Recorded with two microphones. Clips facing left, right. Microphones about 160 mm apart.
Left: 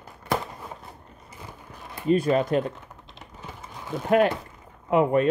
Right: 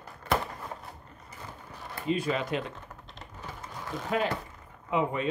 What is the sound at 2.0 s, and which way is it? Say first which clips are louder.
Speech: left 8 dB; 45° left (ahead or behind).